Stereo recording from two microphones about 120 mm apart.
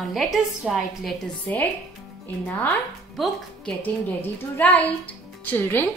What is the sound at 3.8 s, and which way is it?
A woman's voice, 15° left (ahead or behind).